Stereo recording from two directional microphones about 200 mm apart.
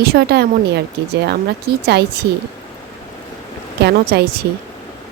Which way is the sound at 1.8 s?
55° right (ahead or behind).